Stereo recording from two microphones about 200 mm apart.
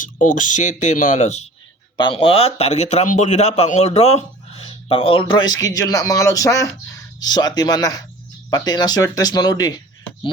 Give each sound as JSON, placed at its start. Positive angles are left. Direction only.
{"t": 0.0, "sound": "a man's voice", "side_deg": 40}